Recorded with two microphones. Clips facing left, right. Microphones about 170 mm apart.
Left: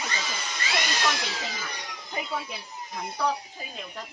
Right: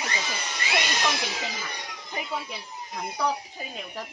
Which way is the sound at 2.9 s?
5° right (ahead or behind).